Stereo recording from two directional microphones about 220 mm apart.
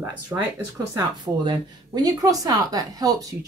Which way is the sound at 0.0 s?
10° right (ahead or behind).